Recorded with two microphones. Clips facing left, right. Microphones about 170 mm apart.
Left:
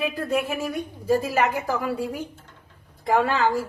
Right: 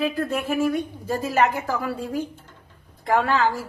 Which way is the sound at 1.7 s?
20° left (ahead or behind).